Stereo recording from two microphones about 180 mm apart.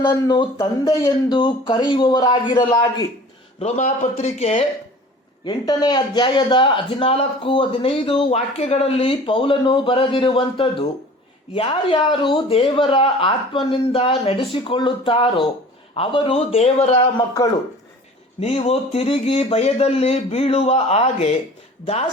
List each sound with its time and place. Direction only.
0.0 s speech: 25° left (ahead or behind)
3.6 s speech: 40° left (ahead or behind)
5.5 s speech: 25° left (ahead or behind)
18.3 s speech: 30° left (ahead or behind)